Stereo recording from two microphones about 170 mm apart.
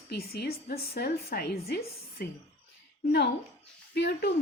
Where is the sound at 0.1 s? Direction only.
65° left (ahead or behind).